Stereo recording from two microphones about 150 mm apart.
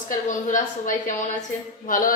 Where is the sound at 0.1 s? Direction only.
60° left (ahead or behind).